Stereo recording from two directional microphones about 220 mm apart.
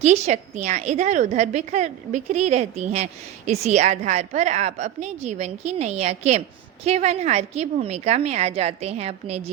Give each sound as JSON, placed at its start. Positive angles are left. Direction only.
{"t": 0.0, "sound": "a woman's voice", "side_deg": -30}